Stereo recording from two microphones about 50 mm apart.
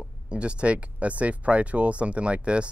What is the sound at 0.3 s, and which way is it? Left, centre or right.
Speech, right.